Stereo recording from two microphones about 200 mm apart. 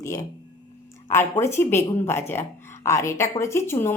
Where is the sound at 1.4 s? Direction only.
10° left (ahead or behind).